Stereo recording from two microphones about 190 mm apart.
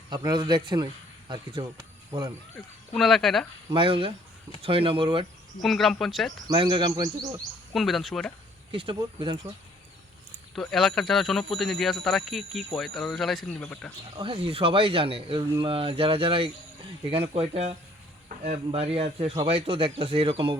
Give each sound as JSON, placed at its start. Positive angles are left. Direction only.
{"t": 0.1, "sound": "speech", "side_deg": -25}
{"t": 2.9, "sound": "speech", "side_deg": 0}
{"t": 3.7, "sound": "speech", "side_deg": -25}
{"t": 5.6, "sound": "speech", "side_deg": 0}
{"t": 6.5, "sound": "speech", "side_deg": -25}
{"t": 7.7, "sound": "speech", "side_deg": 0}
{"t": 8.7, "sound": "speech", "side_deg": -30}
{"t": 10.5, "sound": "speech", "side_deg": 0}
{"t": 14.2, "sound": "speech", "side_deg": -30}